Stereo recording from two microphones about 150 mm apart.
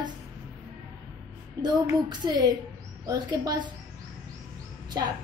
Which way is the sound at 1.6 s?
30° right (ahead or behind).